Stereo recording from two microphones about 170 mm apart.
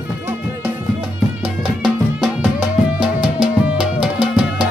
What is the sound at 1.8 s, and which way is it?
Music, 5° right (ahead or behind).